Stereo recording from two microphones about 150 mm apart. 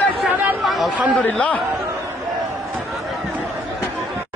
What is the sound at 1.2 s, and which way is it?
Speech, 10° left (ahead or behind).